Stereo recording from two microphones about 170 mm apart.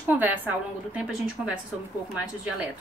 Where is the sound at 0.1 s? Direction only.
10° right (ahead or behind).